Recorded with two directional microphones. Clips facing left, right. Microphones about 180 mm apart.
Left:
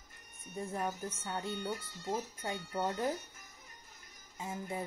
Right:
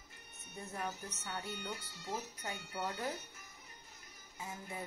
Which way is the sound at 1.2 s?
30° left (ahead or behind).